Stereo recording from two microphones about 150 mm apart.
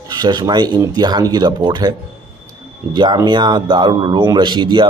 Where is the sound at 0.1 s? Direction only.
30° right (ahead or behind).